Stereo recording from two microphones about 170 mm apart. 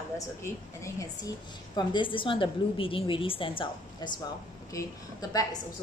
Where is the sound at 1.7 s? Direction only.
30° left (ahead or behind).